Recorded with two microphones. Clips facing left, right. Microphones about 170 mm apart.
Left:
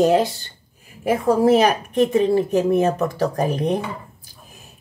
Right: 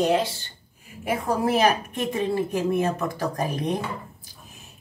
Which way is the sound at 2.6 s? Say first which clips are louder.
Left 5 dB; 35° left (ahead or behind).